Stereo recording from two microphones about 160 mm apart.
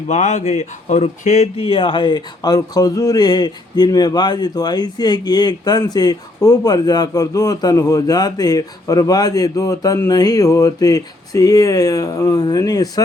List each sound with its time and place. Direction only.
0.1 s a man's voice: 45° left (ahead or behind); by 12.9 s 25° left (ahead or behind)